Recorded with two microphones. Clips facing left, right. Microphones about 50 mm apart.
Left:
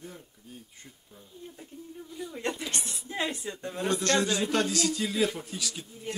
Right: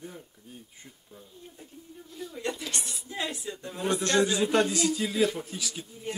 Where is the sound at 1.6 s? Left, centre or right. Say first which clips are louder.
Left 4 dB; centre; by 3.5 s left.